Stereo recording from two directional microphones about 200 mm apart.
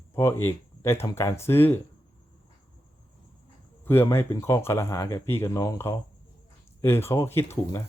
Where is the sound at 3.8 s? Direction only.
10° left (ahead or behind).